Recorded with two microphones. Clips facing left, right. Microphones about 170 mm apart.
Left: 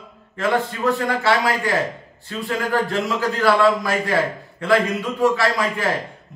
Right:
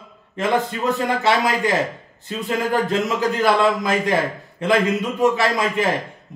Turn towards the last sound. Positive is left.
turn(degrees=-20)  # may be behind; listen again after turning